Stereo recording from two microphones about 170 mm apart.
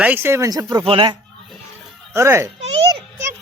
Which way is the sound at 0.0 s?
10° right (ahead or behind).